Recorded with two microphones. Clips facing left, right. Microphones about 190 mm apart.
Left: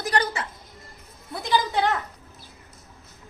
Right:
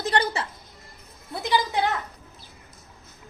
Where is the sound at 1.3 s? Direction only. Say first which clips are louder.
Even; 20° right (ahead or behind).